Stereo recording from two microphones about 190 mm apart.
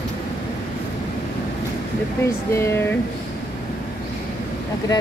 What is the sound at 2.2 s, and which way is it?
Speech, 15° left (ahead or behind).